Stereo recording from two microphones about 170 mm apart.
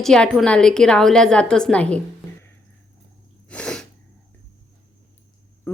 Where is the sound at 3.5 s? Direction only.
5° left (ahead or behind).